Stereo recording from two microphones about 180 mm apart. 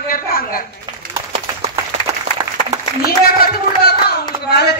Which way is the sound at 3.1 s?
60° left (ahead or behind).